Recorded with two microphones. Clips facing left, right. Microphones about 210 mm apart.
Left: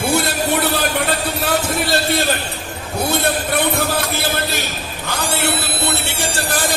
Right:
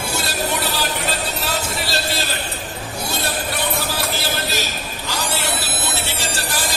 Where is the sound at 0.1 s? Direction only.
55° left (ahead or behind).